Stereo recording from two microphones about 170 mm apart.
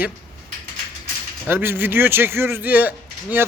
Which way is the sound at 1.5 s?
10° right (ahead or behind).